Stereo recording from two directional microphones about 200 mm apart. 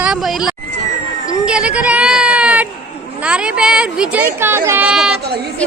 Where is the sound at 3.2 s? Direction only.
5° right (ahead or behind).